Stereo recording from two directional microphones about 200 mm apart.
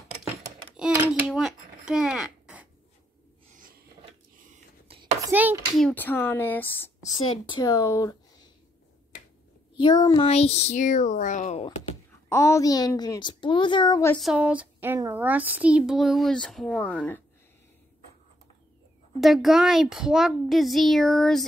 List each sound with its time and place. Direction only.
1.2 s a sound: 5° right (ahead or behind)
3.5 s filing: 45° right (ahead or behind)
5.2 s a sound: 10° right (ahead or behind)
5.8 s speech: 5° left (ahead or behind)
7.2 s speech: 20° left (ahead or behind)
9.8 s speech: 20° left (ahead or behind)
12.3 s a woman's voice: 15° left (ahead or behind)
14.1 s speech: centre (ahead or behind)
19.1 s speech: centre (ahead or behind)